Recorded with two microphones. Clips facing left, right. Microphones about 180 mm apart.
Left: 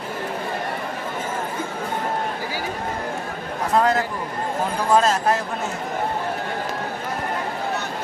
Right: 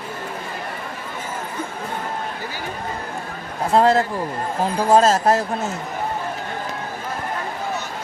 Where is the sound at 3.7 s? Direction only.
30° right (ahead or behind).